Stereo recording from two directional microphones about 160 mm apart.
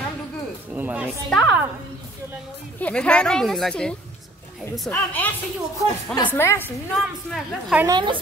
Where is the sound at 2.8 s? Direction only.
5° left (ahead or behind).